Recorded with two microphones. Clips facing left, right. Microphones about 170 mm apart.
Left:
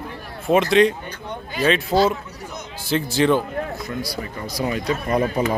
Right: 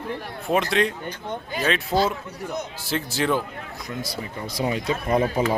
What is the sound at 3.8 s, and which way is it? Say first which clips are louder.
Speech: left 3 dB; 20° right (ahead or behind).